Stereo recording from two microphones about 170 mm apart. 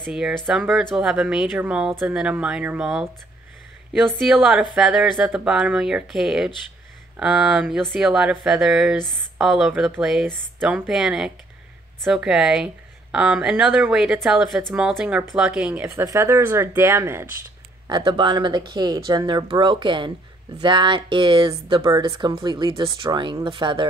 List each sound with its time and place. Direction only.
0.1 s speech: 5° right (ahead or behind)
17.8 s speech: 25° right (ahead or behind)